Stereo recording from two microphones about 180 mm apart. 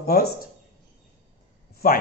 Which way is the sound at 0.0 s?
55° left (ahead or behind).